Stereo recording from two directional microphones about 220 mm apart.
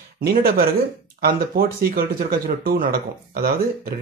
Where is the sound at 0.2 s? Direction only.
45° right (ahead or behind).